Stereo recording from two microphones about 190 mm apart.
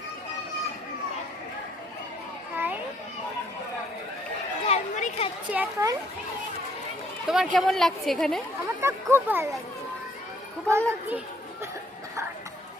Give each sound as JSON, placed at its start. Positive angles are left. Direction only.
{"t": 2.6, "sound": "children playing", "side_deg": -10}
{"t": 4.6, "sound": "a sound", "side_deg": 30}
{"t": 5.5, "sound": "a sound", "side_deg": -10}
{"t": 7.3, "sound": "a woman's voice", "side_deg": 0}
{"t": 8.8, "sound": "speech", "side_deg": -15}
{"t": 10.7, "sound": "speech", "side_deg": -15}